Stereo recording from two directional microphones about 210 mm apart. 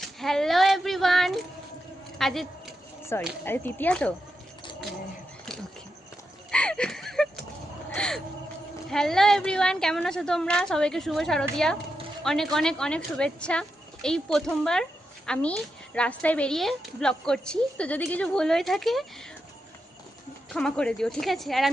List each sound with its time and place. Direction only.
0.2 s child singing: centre (ahead or behind)
2.1 s a woman's voice: centre (ahead or behind)
3.1 s speech: 10° left (ahead or behind)
6.5 s a sound: 5° left (ahead or behind)
8.9 s a woman's voice: centre (ahead or behind)
20.5 s a woman's voice: 5° left (ahead or behind)